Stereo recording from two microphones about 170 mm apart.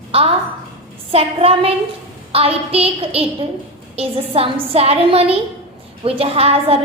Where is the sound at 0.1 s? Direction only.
35° right (ahead or behind).